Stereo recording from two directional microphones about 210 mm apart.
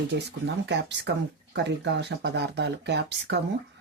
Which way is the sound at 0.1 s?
55° right (ahead or behind).